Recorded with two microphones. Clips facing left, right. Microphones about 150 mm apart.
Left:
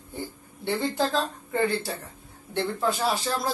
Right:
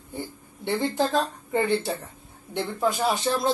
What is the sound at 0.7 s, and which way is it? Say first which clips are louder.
A woman's voice: right 1 dB; 15° right (ahead or behind).